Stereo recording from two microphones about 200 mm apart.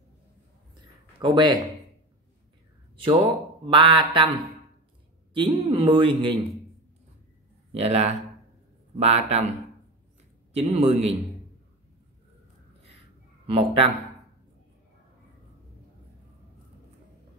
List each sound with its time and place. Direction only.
1.2 s a man's voice: 20° right (ahead or behind)
3.6 s a man's voice: 25° right (ahead or behind)
5.3 s a man's voice: 25° right (ahead or behind)
7.7 s speech: 30° right (ahead or behind)
10.5 s speech: 30° right (ahead or behind)
13.5 s a man's voice: 30° right (ahead or behind)